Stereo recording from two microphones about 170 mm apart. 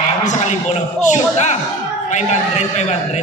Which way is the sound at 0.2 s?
45° left (ahead or behind).